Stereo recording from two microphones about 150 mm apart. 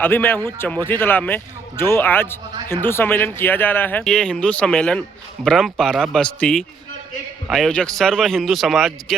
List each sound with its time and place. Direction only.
0.0 s a man's voice: 15° left (ahead or behind)